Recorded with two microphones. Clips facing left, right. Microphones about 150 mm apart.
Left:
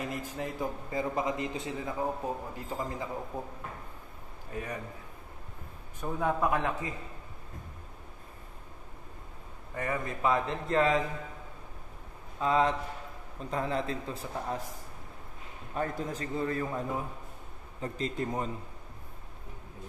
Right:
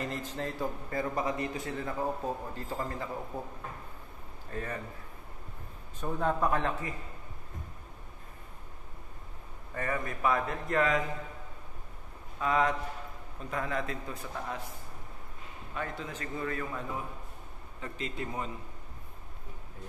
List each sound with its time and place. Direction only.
0.0 s a man's voice: 10° left (ahead or behind)
4.5 s a man's voice: 15° left (ahead or behind)
5.9 s a man's voice: 10° left (ahead or behind)
9.8 s a man's voice: 20° left (ahead or behind)
12.4 s a man's voice: 25° left (ahead or behind)
15.7 s a man's voice: 40° left (ahead or behind)